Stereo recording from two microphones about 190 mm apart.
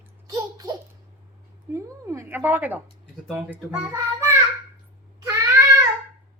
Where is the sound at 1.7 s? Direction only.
15° right (ahead or behind).